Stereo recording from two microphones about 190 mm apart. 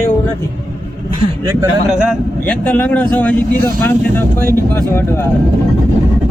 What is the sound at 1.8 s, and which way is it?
Speech, 5° left (ahead or behind).